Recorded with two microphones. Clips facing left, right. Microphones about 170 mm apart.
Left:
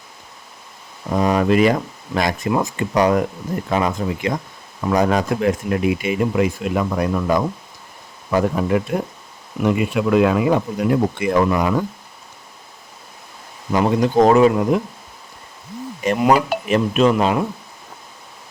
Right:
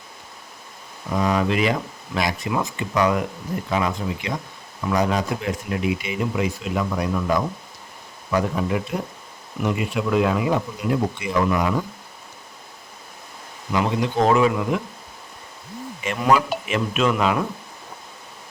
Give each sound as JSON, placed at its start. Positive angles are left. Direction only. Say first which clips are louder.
{"t": 1.1, "sound": "speech", "louder": "left 5 dB", "side_deg": 50}
{"t": 9.6, "sound": "speech", "louder": "left 5 dB", "side_deg": 60}
{"t": 13.7, "sound": "speech", "louder": "left 6 dB", "side_deg": 40}
{"t": 16.0, "sound": "speech", "louder": "left 4 dB", "side_deg": 40}